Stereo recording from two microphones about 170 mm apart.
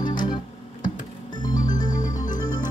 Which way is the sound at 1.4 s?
25° left (ahead or behind).